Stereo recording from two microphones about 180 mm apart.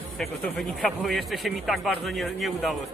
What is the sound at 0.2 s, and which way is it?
Speech, centre (ahead or behind).